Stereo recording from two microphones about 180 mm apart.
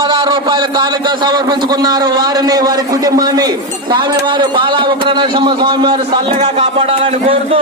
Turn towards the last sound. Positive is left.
turn(degrees=-30)  # may be behind; listen again after turning